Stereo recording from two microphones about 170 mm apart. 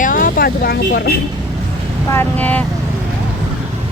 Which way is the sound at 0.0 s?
55° left (ahead or behind).